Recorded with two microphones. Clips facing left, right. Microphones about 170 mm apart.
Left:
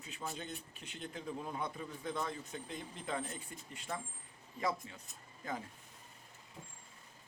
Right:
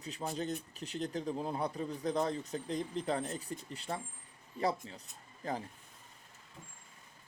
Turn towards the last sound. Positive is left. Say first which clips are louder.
# right 4 dB
turn(degrees=-35)  # may be behind; listen again after turning